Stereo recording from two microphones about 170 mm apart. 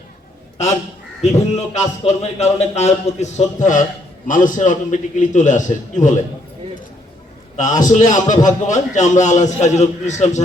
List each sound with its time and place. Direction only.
0.6 s a man's voice: 40° left (ahead or behind)
7.5 s a man's voice: 45° left (ahead or behind)